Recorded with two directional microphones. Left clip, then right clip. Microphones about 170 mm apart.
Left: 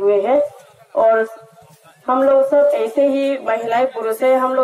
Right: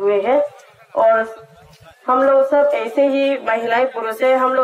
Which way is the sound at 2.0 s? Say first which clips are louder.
Even; 30° left (ahead or behind).